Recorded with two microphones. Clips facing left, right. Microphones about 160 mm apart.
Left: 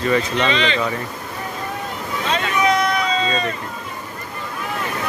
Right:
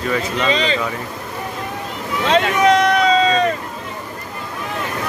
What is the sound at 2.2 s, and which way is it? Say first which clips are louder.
Run: right 5 dB; 75° right (ahead or behind).